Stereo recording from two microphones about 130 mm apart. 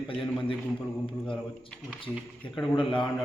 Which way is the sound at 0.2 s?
40° left (ahead or behind).